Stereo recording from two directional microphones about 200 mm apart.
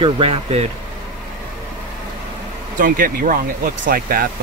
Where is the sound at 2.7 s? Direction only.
45° right (ahead or behind).